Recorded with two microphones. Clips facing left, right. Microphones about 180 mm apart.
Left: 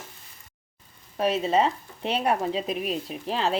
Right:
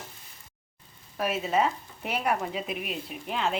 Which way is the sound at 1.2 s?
30° left (ahead or behind).